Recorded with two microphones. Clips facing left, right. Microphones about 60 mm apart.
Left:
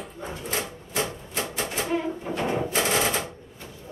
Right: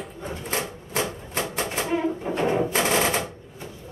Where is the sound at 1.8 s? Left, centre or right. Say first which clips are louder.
Right 2 dB; centre.